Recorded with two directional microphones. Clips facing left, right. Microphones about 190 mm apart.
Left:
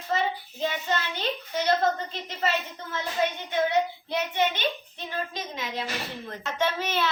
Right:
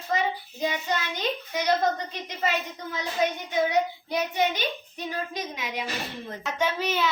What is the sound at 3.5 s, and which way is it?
A woman's voice, 15° right (ahead or behind).